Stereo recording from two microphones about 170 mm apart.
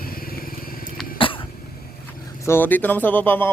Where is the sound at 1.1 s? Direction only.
30° left (ahead or behind).